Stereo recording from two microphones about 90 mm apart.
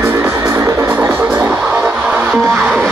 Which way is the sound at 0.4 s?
30° right (ahead or behind).